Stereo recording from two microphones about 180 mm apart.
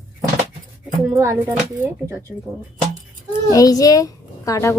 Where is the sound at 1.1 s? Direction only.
10° right (ahead or behind).